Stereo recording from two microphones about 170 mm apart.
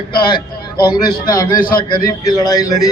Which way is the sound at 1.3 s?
20° left (ahead or behind).